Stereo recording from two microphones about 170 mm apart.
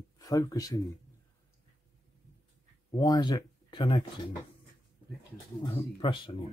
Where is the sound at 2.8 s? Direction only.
20° left (ahead or behind).